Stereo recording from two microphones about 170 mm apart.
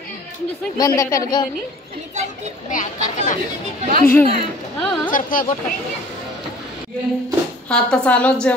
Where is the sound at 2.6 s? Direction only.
50° left (ahead or behind).